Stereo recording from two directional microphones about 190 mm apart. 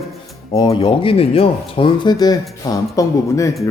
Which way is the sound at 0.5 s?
20° left (ahead or behind).